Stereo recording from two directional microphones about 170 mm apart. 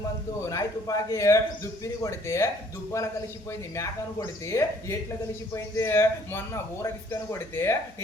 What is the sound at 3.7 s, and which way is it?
Speech, 15° left (ahead or behind).